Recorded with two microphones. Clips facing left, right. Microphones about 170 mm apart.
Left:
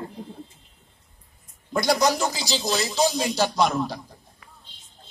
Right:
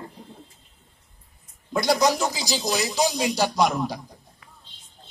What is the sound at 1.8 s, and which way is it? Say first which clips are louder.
Speech: right 1 dB; 10° right (ahead or behind).